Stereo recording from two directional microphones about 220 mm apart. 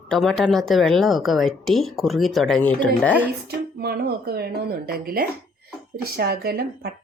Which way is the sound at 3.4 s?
45° right (ahead or behind).